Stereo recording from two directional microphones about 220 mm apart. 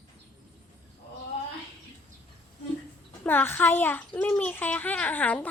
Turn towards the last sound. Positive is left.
turn(degrees=5)  # may be behind; listen again after turning